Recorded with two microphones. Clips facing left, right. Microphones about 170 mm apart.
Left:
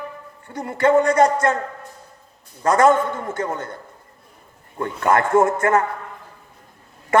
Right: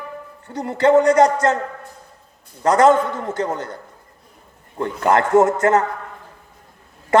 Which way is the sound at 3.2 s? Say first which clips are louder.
Right 2 dB; 30° right (ahead or behind).